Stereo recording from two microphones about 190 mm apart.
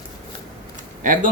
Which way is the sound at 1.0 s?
45° right (ahead or behind).